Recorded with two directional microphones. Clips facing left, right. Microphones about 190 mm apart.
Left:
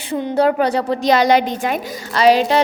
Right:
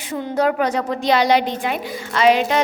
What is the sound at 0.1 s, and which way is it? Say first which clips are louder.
A woman's voice: left 3 dB; 30° left (ahead or behind).